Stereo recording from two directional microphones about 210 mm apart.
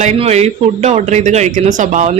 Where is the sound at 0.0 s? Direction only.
30° right (ahead or behind).